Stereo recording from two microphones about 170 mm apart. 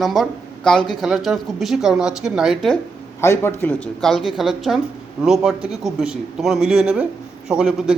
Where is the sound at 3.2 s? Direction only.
15° left (ahead or behind); by 7.9 s 5° right (ahead or behind).